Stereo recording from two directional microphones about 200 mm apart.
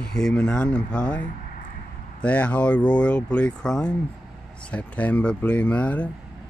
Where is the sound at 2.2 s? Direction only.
5° left (ahead or behind).